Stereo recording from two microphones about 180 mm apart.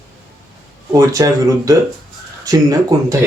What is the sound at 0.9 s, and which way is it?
Speech, 20° right (ahead or behind).